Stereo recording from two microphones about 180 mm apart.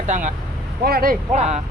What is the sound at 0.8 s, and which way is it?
Speech, 55° right (ahead or behind).